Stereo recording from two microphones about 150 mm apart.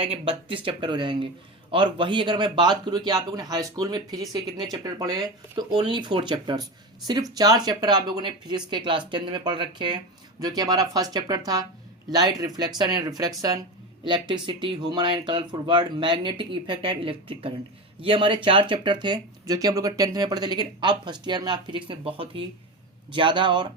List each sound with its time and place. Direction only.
0.0 s speech: 40° right (ahead or behind)